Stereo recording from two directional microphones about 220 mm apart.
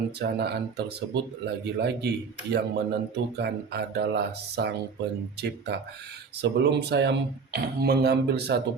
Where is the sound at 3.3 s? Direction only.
50° right (ahead or behind).